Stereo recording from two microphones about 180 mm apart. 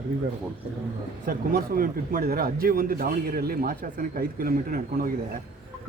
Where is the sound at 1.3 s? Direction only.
55° right (ahead or behind).